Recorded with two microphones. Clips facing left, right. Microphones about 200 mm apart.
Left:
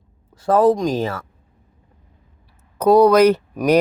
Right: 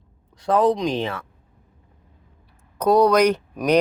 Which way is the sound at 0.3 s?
5° left (ahead or behind).